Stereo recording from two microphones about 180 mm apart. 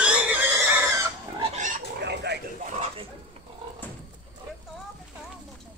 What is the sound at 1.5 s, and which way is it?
Pig, 45° right (ahead or behind).